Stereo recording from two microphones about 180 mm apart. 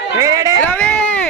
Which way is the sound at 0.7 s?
10° left (ahead or behind).